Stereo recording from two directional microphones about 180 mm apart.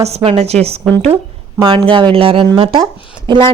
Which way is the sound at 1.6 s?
30° right (ahead or behind).